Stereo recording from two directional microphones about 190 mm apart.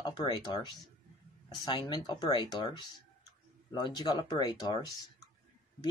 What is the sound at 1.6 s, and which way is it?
Speech, 25° left (ahead or behind).